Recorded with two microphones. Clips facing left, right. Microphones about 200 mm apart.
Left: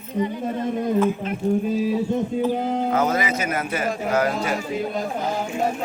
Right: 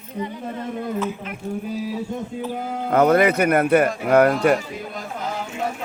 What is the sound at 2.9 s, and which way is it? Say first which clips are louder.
Speech: right 11 dB; 60° right (ahead or behind).